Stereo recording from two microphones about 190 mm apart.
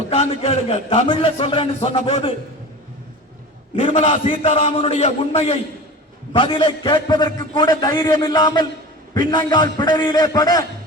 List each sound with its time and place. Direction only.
0.1 s a man's voice: 30° left (ahead or behind)
3.9 s a man's voice: 30° left (ahead or behind)
4.3 s a man's voice: 40° left (ahead or behind)
4.6 s a man's voice: 30° left (ahead or behind)